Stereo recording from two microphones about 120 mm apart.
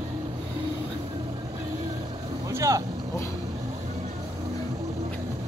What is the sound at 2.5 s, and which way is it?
Vehicle, 25° right (ahead or behind).